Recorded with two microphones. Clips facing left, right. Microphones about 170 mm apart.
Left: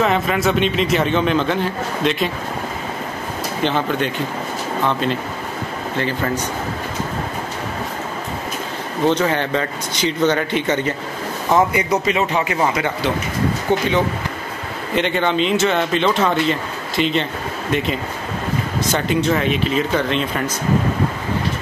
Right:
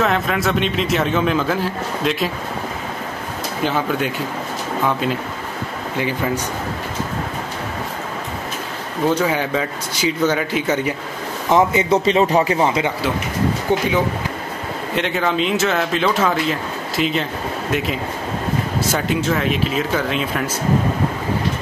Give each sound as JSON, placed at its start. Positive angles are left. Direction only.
{"t": 0.0, "sound": "speech", "side_deg": 0}
{"t": 3.6, "sound": "speech", "side_deg": -5}
{"t": 9.0, "sound": "speech", "side_deg": -10}
{"t": 11.5, "sound": "speech", "side_deg": -25}
{"t": 12.5, "sound": "speech", "side_deg": -20}
{"t": 15.0, "sound": "speech", "side_deg": 0}